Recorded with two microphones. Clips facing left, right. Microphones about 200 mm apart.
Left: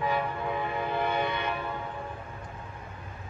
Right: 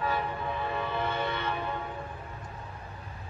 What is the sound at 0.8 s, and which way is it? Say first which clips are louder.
Train: left 4 dB; 15° left (ahead or behind).